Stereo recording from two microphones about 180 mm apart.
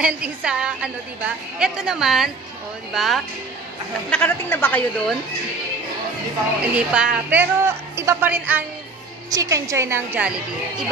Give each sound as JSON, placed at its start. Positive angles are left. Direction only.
{"t": 0.0, "sound": "a woman's voice", "side_deg": -5}
{"t": 4.1, "sound": "a woman's voice", "side_deg": 10}
{"t": 6.6, "sound": "a woman's voice", "side_deg": -5}